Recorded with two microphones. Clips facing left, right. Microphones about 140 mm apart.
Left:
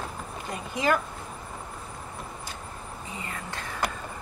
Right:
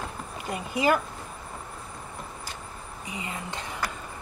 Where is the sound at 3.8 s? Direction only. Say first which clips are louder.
Left 4 dB; 20° left (ahead or behind).